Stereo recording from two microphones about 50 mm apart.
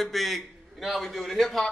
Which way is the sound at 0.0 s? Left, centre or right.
Centre.